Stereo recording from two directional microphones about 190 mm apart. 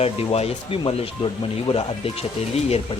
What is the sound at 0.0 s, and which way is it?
Speech, 30° left (ahead or behind).